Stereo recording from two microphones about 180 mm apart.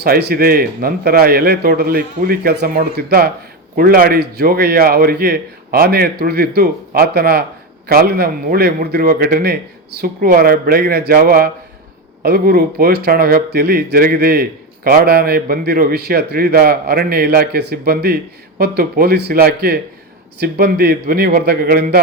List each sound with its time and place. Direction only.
0.0 s a man's voice: 60° right (ahead or behind)